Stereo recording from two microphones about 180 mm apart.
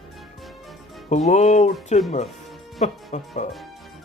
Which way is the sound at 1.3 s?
40° left (ahead or behind).